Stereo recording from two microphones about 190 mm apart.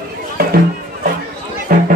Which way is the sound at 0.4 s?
55° right (ahead or behind).